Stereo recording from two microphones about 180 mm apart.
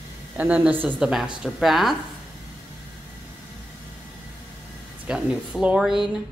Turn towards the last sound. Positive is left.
turn(degrees=-5)  # may be behind; listen again after turning